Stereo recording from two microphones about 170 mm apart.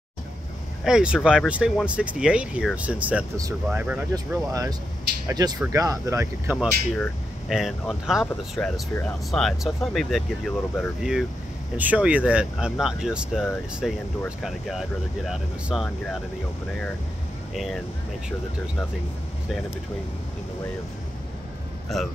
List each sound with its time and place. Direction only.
0.8 s speech: 5° right (ahead or behind)
4.3 s speech: 20° right (ahead or behind)
8.5 s speech: 5° left (ahead or behind)
17.6 s speech: centre (ahead or behind)